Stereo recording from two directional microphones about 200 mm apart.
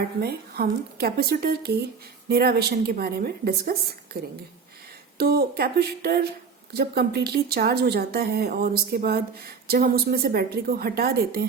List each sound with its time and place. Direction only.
0.2 s speech: 50° right (ahead or behind)